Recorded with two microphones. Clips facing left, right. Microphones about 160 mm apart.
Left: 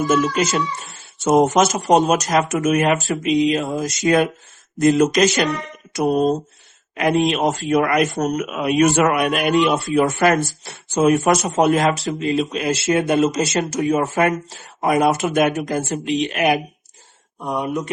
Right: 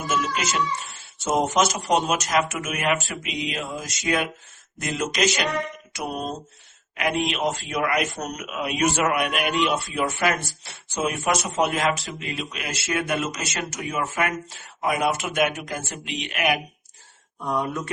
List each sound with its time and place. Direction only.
0.1 s speech: 40° left (ahead or behind)
1.2 s speech: 55° left (ahead or behind); by 16.6 s 30° left (ahead or behind)
17.4 s speech: 20° left (ahead or behind)